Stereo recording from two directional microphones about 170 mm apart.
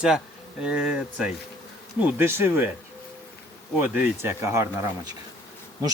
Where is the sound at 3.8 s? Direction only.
10° right (ahead or behind).